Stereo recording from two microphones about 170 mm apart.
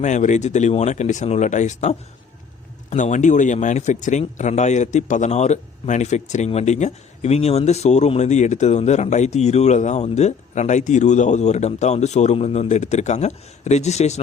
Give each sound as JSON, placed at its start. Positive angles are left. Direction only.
{"t": 0.0, "sound": "speech", "side_deg": 45}